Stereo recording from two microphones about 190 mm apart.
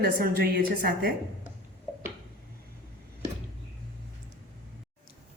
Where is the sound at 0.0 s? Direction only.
55° right (ahead or behind).